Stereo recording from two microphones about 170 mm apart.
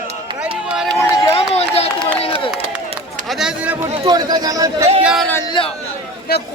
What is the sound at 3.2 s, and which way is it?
Speech, 5° right (ahead or behind).